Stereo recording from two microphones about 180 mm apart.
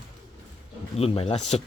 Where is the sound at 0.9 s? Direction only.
35° left (ahead or behind).